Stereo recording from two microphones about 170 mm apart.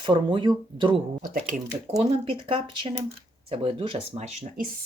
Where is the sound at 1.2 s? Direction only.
55° right (ahead or behind).